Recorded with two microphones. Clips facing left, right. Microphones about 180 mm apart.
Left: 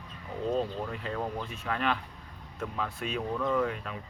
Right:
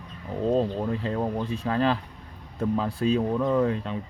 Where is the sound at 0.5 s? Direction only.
30° right (ahead or behind).